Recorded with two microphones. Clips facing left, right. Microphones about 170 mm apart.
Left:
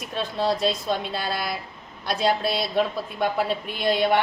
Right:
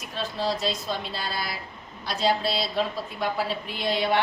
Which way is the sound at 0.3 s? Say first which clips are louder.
Left 4 dB; 55° left (ahead or behind).